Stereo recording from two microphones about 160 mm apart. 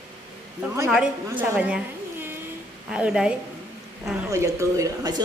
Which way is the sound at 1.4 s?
10° right (ahead or behind).